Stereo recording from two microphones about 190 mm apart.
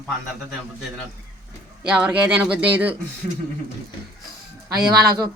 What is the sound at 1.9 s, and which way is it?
Speech, 5° right (ahead or behind).